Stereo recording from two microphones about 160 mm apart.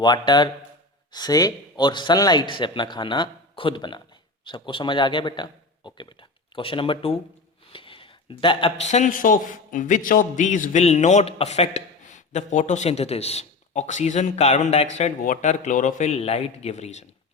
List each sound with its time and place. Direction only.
0.0 s a man's voice: 25° left (ahead or behind); by 15.1 s 45° left (ahead or behind)
15.2 s a man's voice: 55° left (ahead or behind)